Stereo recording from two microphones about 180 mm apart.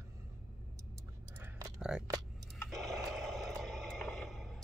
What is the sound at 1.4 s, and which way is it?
Typing, 15° right (ahead or behind).